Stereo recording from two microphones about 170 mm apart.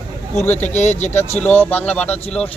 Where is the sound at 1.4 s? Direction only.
10° left (ahead or behind).